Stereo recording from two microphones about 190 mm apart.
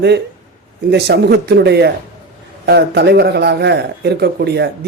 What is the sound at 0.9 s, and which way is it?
A man's voice, 60° right (ahead or behind).